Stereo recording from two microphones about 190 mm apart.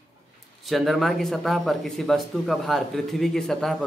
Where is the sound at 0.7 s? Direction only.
Centre (ahead or behind).